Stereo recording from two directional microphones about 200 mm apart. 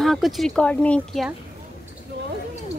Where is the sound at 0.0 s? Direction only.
Centre (ahead or behind).